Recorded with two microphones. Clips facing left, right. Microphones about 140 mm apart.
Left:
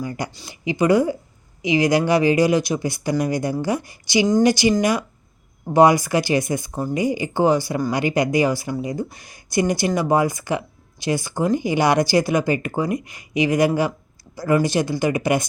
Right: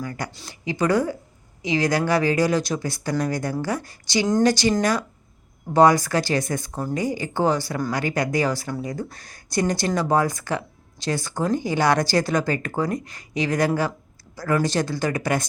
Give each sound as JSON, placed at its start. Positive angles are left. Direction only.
{"t": 0.0, "sound": "speech", "side_deg": 15}